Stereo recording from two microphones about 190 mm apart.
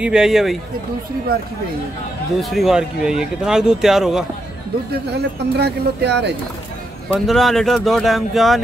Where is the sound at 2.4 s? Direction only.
Centre (ahead or behind).